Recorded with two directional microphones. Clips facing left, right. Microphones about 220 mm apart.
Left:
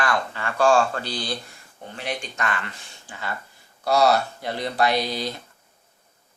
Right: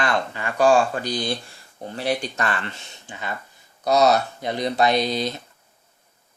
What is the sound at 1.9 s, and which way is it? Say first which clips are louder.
Speech: right 6 dB; 35° right (ahead or behind).